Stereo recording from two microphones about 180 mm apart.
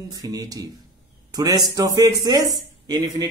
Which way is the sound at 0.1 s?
20° right (ahead or behind).